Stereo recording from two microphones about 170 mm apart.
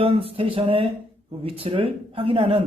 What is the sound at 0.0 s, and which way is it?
A man's voice, 35° right (ahead or behind).